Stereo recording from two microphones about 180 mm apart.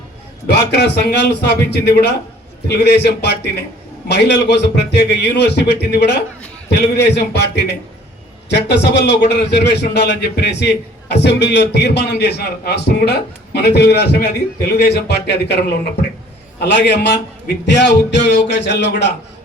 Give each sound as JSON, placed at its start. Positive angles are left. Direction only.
{"t": 0.4, "sound": "a man's voice", "side_deg": 70}